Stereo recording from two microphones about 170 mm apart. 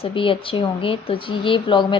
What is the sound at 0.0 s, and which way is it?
A woman's voice, 30° left (ahead or behind).